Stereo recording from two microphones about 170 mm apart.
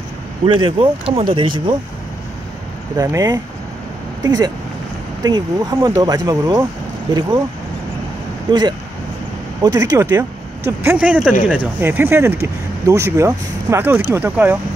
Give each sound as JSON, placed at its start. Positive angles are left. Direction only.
{"t": 0.5, "sound": "speech", "side_deg": -30}
{"t": 3.0, "sound": "speech", "side_deg": -20}
{"t": 8.5, "sound": "speech", "side_deg": -25}